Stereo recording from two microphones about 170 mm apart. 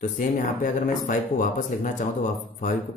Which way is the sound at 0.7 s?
50° left (ahead or behind).